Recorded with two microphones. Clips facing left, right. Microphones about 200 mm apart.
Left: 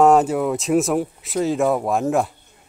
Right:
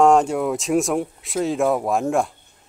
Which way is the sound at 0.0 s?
5° left (ahead or behind).